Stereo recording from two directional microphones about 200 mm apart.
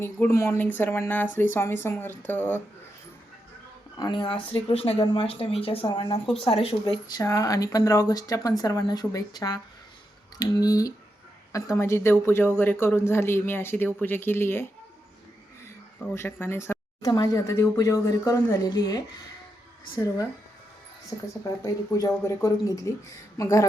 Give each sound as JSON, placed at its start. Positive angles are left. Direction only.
{"t": 0.0, "sound": "speech", "side_deg": 15}
{"t": 3.9, "sound": "speech", "side_deg": 20}
{"t": 10.6, "sound": "speech", "side_deg": 20}
{"t": 16.1, "sound": "speech", "side_deg": 10}
{"t": 21.6, "sound": "speech", "side_deg": 15}